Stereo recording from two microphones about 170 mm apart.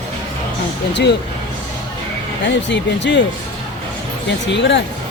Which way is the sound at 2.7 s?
90° left.